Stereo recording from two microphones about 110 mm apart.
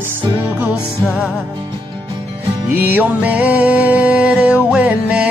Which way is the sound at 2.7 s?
15° right (ahead or behind).